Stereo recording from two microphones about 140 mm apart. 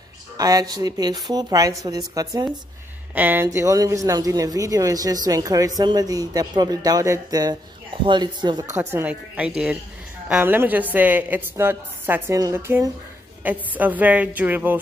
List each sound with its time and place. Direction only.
0.4 s a woman's voice: 25° right (ahead or behind)
3.2 s a woman's voice: 15° right (ahead or behind)
3.4 s a woman's voice: 25° right (ahead or behind)
8.7 s a woman's voice: 15° right (ahead or behind)